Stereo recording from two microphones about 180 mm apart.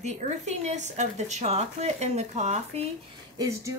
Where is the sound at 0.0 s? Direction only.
40° right (ahead or behind).